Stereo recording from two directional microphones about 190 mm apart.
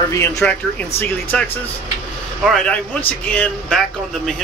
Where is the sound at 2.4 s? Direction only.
5° left (ahead or behind).